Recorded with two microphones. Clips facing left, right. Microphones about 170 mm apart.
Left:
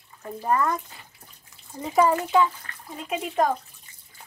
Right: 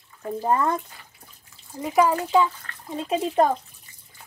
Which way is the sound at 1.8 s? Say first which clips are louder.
Even; 10° right (ahead or behind).